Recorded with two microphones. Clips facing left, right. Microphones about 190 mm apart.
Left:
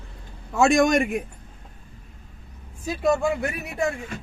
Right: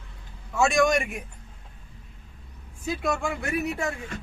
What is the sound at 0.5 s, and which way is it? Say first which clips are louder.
Speech: left 4 dB; 40° left (ahead or behind).